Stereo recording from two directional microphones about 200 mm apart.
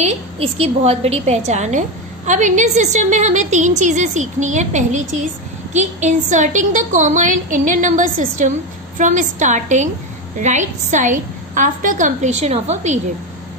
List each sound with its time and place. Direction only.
0.0 s a woman's voice: 30° right (ahead or behind)